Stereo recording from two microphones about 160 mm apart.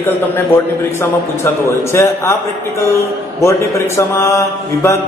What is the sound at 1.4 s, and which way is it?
Speech, 15° left (ahead or behind).